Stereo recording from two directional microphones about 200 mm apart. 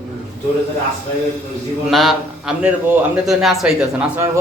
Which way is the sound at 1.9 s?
Centre (ahead or behind).